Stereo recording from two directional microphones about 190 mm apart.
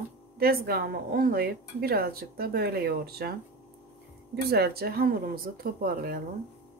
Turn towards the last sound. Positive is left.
turn(degrees=-50)  # may be behind; listen again after turning